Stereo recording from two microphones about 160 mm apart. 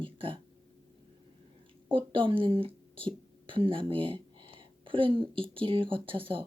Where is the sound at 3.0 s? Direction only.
30° right (ahead or behind).